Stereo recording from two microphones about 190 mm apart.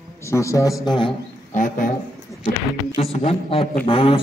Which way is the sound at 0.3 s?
15° left (ahead or behind).